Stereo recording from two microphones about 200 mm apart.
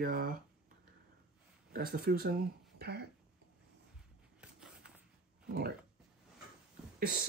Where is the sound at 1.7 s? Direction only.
45° right (ahead or behind).